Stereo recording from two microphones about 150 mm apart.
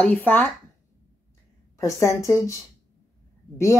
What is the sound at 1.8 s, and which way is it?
Speech, 20° left (ahead or behind).